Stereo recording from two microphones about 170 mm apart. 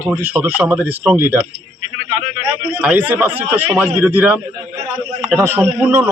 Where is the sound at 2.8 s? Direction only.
10° right (ahead or behind).